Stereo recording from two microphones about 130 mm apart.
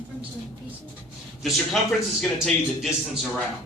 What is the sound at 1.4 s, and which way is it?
Speech, centre (ahead or behind).